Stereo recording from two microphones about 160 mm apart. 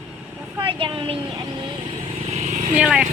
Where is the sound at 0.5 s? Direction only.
30° right (ahead or behind).